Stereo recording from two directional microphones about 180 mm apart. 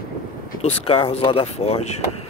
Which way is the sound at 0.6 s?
30° left (ahead or behind).